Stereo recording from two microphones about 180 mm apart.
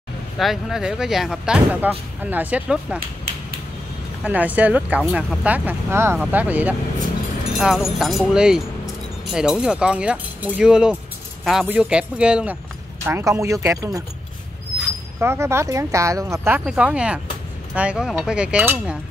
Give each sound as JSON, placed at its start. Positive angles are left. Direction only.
{"t": 0.4, "sound": "speech", "side_deg": 0}
{"t": 4.2, "sound": "speech", "side_deg": -10}
{"t": 15.1, "sound": "speech", "side_deg": -15}